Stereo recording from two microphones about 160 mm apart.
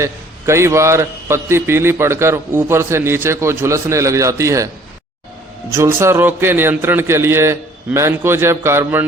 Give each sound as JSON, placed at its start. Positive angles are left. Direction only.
{"t": 0.0, "sound": "a man's voice", "side_deg": -15}
{"t": 5.7, "sound": "a man's voice", "side_deg": -15}